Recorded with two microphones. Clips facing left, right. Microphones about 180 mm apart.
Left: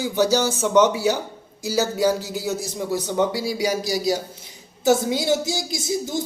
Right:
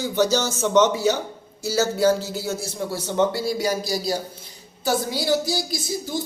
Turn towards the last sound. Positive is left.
turn(degrees=20)  # may be behind; listen again after turning